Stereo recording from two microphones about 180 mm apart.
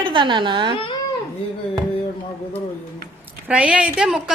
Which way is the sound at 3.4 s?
5° right (ahead or behind).